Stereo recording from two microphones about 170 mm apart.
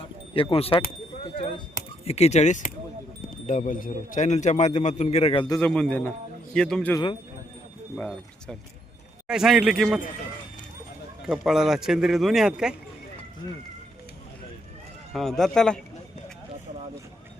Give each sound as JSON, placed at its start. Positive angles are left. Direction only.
{"t": 0.0, "sound": "a sound", "side_deg": 30}
{"t": 1.4, "sound": "speech", "side_deg": 30}
{"t": 5.5, "sound": "a man's voice", "side_deg": 10}
{"t": 7.9, "sound": "a man's voice", "side_deg": 5}
{"t": 11.3, "sound": "a man's voice", "side_deg": -5}
{"t": 15.1, "sound": "a man's voice", "side_deg": 0}